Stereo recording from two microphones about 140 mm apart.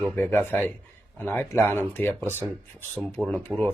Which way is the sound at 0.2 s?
15° left (ahead or behind).